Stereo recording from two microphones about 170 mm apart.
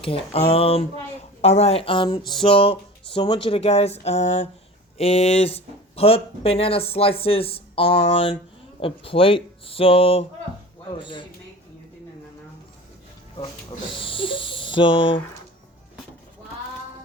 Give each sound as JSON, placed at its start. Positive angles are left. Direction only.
{"t": 0.0, "sound": "speech", "side_deg": 35}
{"t": 13.4, "sound": "speech", "side_deg": 30}